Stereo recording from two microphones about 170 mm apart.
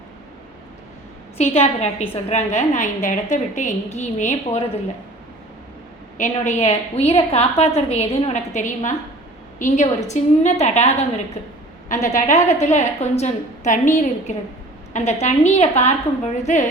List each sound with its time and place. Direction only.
1.4 s a woman's voice: 40° left (ahead or behind)
6.1 s a woman's voice: 45° left (ahead or behind)